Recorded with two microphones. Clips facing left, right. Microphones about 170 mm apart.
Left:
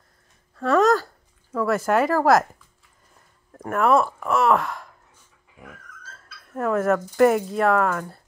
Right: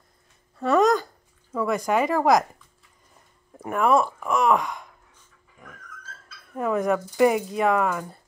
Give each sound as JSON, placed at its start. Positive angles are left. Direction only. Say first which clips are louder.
{"t": 0.7, "sound": "speech", "louder": "left 1 dB", "side_deg": 0}
{"t": 3.5, "sound": "speech", "louder": "left 1 dB", "side_deg": -5}
{"t": 6.5, "sound": "speech", "louder": "left 2 dB", "side_deg": 0}